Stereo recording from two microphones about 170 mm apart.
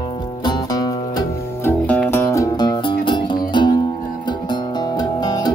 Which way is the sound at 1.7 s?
10° left (ahead or behind).